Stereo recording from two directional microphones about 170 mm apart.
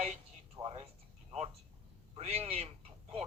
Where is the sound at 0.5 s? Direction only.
30° right (ahead or behind).